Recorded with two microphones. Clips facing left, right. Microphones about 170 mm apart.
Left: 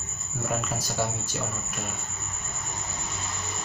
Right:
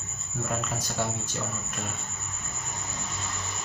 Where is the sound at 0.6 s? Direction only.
5° left (ahead or behind).